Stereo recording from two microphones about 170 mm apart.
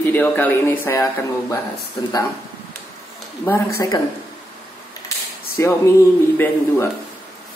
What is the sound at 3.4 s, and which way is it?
Speech, 15° left (ahead or behind).